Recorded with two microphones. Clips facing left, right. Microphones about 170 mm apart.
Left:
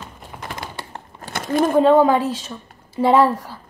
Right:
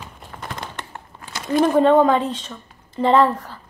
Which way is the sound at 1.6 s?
5° left (ahead or behind).